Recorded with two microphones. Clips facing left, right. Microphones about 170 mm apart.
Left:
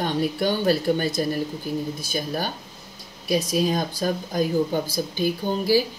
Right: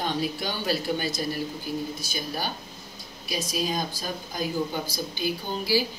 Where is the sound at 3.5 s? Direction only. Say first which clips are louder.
Left 6 dB; 50° left (ahead or behind).